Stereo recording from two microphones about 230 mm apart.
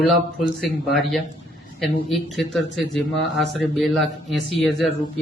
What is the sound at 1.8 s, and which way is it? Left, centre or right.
Speech, centre.